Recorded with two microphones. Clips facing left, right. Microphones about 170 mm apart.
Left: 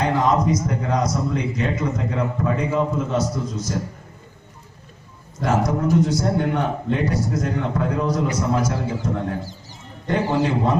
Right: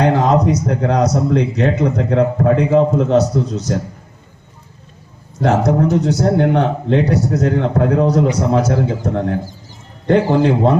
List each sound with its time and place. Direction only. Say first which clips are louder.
0.0 s a man's voice: right 6 dB; 70° right (ahead or behind)
5.4 s a man's voice: right 6 dB; 65° right (ahead or behind)